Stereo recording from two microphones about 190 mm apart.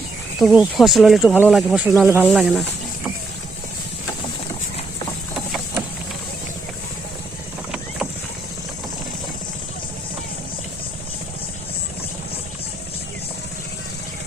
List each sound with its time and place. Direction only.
0.3 s speech: 5° right (ahead or behind)